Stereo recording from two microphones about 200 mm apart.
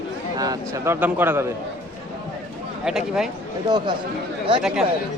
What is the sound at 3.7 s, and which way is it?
Speech, 25° right (ahead or behind).